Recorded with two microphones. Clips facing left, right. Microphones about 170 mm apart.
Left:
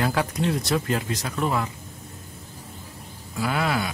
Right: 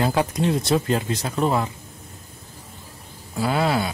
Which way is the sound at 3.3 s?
30° right (ahead or behind).